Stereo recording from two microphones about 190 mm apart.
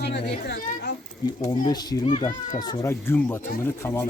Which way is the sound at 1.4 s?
20° left (ahead or behind).